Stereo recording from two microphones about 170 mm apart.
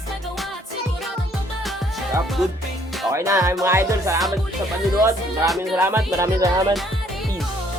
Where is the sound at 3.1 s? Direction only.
15° right (ahead or behind).